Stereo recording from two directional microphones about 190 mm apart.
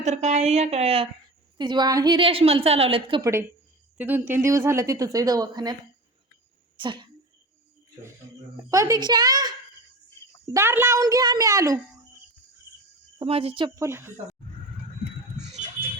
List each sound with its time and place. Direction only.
0.0 s a woman's voice: 35° right (ahead or behind)
1.5 s a woman's voice: 25° right (ahead or behind)
3.2 s a woman's voice: 15° right (ahead or behind)
6.7 s speech: 25° right (ahead or behind)
8.7 s a woman's voice: 15° right (ahead or behind)
13.1 s a woman's voice: 30° right (ahead or behind)
13.7 s a woman's voice: 15° right (ahead or behind)
15.5 s music: 40° right (ahead or behind)